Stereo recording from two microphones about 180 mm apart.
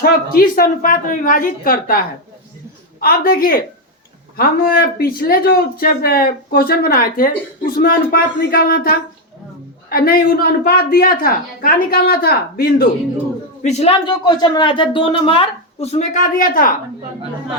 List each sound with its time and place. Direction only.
0.0 s speech: 55° left (ahead or behind)
3.0 s a woman's voice: 55° left (ahead or behind)
13.6 s speech: 40° left (ahead or behind)
14.3 s a woman's voice: 25° left (ahead or behind); by 16.7 s 50° left (ahead or behind)